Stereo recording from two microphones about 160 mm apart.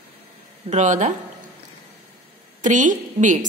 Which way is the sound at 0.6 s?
50° right (ahead or behind).